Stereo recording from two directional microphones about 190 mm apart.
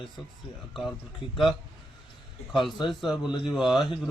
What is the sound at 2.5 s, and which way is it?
Speech, centre (ahead or behind).